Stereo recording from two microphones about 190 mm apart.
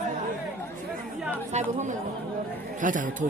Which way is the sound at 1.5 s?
40° right (ahead or behind).